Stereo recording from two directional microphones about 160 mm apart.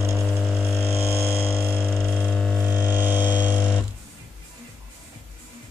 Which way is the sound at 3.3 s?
30° left (ahead or behind).